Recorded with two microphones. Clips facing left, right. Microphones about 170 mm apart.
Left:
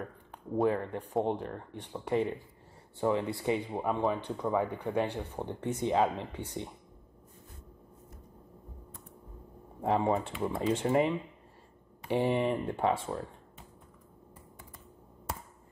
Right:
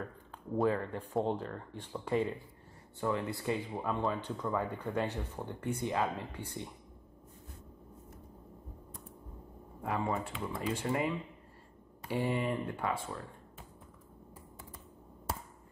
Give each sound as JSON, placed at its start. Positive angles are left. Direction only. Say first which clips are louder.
{"t": 0.7, "sound": "speech", "louder": "left 2 dB", "side_deg": 20}
{"t": 9.8, "sound": "speech", "louder": "left 6 dB", "side_deg": 25}